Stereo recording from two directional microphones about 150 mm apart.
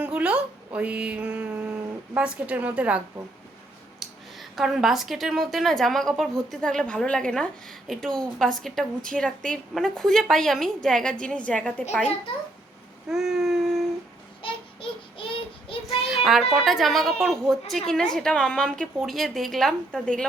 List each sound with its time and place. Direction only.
0.0 s speech: 10° right (ahead or behind)
4.0 s a woman's voice: centre (ahead or behind)
13.1 s a sound: 5° right (ahead or behind)
14.4 s child singing: 35° left (ahead or behind)
15.9 s a woman's voice: centre (ahead or behind)